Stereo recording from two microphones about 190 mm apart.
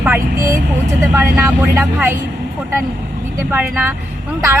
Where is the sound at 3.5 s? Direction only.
10° right (ahead or behind).